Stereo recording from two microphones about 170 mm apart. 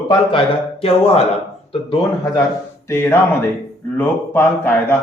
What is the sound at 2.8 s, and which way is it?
Speech, 15° left (ahead or behind).